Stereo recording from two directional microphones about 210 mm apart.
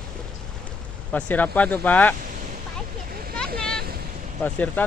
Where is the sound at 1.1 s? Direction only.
5° left (ahead or behind).